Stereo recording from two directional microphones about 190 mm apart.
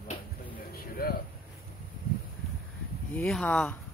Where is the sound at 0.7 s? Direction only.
50° left (ahead or behind).